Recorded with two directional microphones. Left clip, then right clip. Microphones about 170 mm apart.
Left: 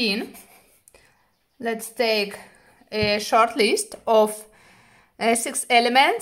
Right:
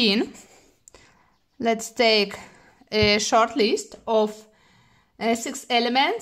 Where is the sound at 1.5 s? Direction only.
35° right (ahead or behind).